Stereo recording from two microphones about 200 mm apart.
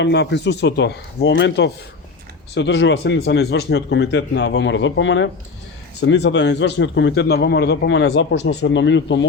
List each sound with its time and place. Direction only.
0.0 s a man's voice: 60° left (ahead or behind)
6.0 s a man's voice: 60° left (ahead or behind)